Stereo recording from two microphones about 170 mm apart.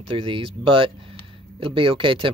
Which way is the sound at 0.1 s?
30° right (ahead or behind).